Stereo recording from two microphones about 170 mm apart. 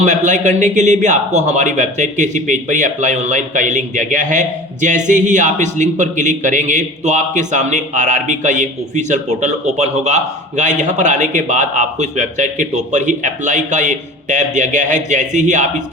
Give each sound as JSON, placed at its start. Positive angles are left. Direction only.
{"t": 0.0, "sound": "speech", "side_deg": -45}